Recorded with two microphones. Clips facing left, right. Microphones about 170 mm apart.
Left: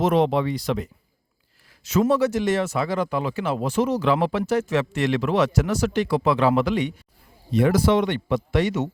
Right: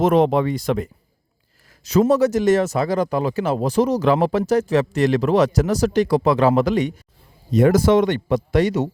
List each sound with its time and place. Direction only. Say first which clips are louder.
0.0 s speech: right 4 dB; 50° right (ahead or behind)
1.8 s speech: right 4 dB; 40° right (ahead or behind)